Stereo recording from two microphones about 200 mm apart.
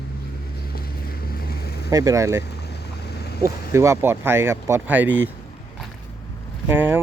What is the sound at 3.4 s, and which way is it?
Speech, 15° right (ahead or behind).